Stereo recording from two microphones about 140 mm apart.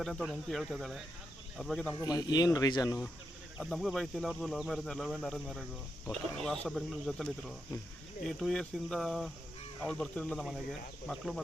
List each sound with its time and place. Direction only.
0.0 s speech: centre (ahead or behind)
2.0 s speech: 25° left (ahead or behind)
3.6 s speech: centre (ahead or behind)